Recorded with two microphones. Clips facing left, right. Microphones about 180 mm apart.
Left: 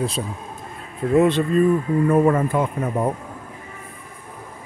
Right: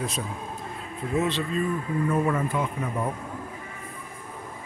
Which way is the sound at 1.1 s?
55° left (ahead or behind).